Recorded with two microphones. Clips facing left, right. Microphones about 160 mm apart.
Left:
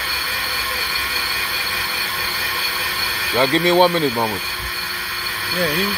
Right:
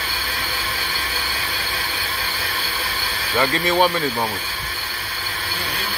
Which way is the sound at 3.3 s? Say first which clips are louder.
Left 4 dB; 25° left (ahead or behind).